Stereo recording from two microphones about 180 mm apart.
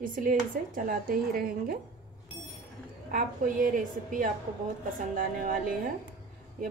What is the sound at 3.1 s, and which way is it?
A woman's voice, 50° right (ahead or behind).